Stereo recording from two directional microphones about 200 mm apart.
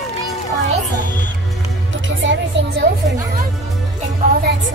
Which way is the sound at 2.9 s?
55° right (ahead or behind).